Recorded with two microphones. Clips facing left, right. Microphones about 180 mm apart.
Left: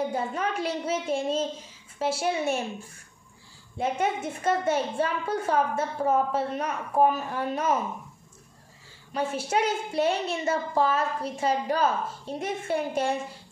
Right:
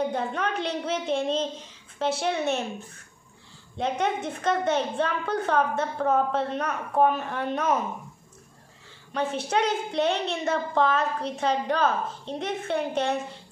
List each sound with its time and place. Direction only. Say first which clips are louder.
0.0 s a woman's voice: right 1 dB; 10° left (ahead or behind)
3.7 s a woman's voice: even; 10° left (ahead or behind)
9.1 s a woman's voice: right 1 dB; 10° left (ahead or behind)